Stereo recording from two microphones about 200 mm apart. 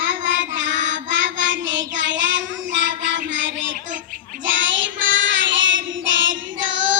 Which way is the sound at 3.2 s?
70° right (ahead or behind).